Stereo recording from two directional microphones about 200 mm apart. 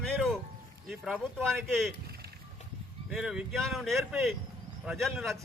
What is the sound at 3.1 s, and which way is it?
A man's voice, centre (ahead or behind).